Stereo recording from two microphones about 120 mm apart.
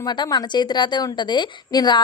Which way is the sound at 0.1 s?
35° left (ahead or behind).